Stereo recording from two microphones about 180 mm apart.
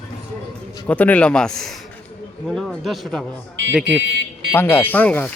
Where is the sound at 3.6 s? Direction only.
90° right.